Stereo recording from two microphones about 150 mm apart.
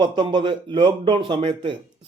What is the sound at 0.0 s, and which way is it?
Speech, 30° right (ahead or behind).